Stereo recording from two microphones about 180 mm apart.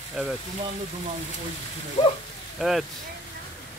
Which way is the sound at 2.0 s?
25° left (ahead or behind).